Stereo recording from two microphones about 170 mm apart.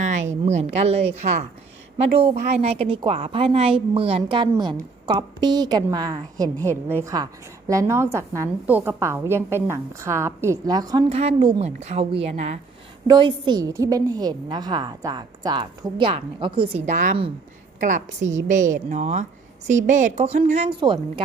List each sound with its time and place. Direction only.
0.4 s a woman's voice: 40° right (ahead or behind)
2.6 s a woman's voice: 35° right (ahead or behind)
11.1 s a woman's voice: 40° right (ahead or behind)
13.1 s a woman's voice: 25° right (ahead or behind)